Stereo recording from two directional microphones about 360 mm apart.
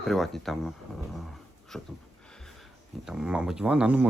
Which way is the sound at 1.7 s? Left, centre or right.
Centre.